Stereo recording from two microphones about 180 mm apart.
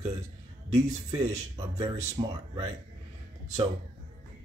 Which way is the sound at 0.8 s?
20° right (ahead or behind).